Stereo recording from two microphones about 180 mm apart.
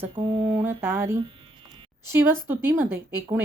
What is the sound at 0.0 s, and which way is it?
Speech, 25° right (ahead or behind).